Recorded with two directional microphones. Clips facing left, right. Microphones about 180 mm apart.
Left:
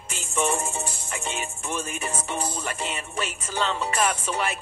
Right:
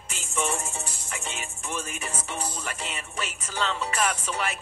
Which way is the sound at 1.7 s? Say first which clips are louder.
Left 4 dB; 30° left (ahead or behind).